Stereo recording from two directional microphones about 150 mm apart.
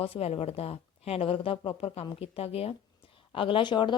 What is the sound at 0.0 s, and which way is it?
A woman's voice, 40° left (ahead or behind).